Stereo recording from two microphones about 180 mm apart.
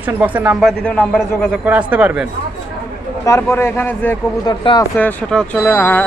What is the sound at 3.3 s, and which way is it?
A man's voice, 15° left (ahead or behind).